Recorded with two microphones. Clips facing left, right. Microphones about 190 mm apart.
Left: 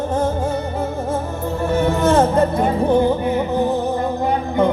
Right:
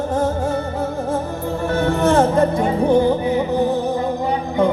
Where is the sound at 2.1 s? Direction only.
15° right (ahead or behind).